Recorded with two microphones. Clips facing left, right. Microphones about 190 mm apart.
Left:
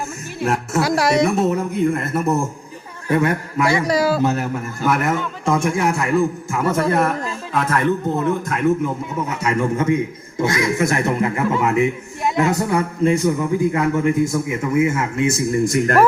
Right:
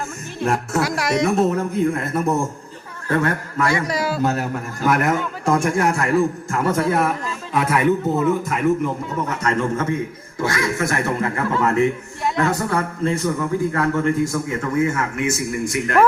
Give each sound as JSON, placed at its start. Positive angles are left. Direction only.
{"t": 0.3, "sound": "music", "side_deg": 5}
{"t": 0.8, "sound": "speech", "side_deg": 30}
{"t": 1.2, "sound": "a man's voice", "side_deg": 5}
{"t": 3.7, "sound": "speech", "side_deg": 35}
{"t": 4.2, "sound": "a man's voice", "side_deg": 0}
{"t": 7.5, "sound": "a man's voice", "side_deg": -10}